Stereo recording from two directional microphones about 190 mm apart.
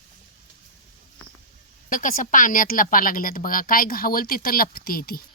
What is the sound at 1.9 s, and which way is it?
Speech, 45° left (ahead or behind).